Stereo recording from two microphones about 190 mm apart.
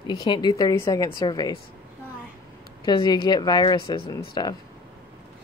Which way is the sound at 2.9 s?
25° left (ahead or behind).